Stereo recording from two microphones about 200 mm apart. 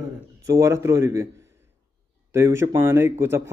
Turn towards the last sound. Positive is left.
turn(degrees=-15)  # may be behind; listen again after turning